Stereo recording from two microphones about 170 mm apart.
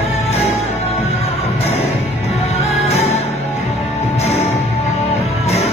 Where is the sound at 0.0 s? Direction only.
40° left (ahead or behind).